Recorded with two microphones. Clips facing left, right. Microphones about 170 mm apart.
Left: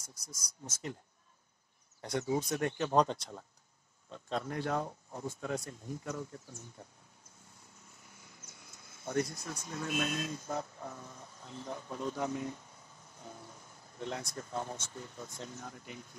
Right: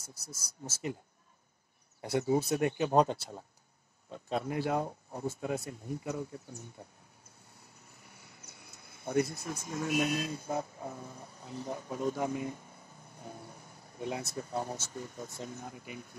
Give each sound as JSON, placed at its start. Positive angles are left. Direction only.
{"t": 0.7, "sound": "speech", "side_deg": -5}
{"t": 2.0, "sound": "speech", "side_deg": -5}
{"t": 6.8, "sound": "speech", "side_deg": -15}
{"t": 8.1, "sound": "cricket", "side_deg": -65}
{"t": 9.4, "sound": "speech", "side_deg": -10}
{"t": 13.5, "sound": "a sound", "side_deg": -10}
{"t": 14.5, "sound": "speech", "side_deg": -10}